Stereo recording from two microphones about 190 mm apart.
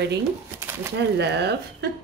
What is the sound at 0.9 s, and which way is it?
Speech, 60° right (ahead or behind).